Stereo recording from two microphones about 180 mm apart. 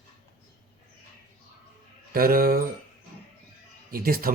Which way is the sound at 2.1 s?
55° right (ahead or behind).